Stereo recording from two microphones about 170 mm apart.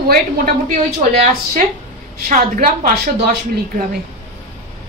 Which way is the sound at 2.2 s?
55° right (ahead or behind).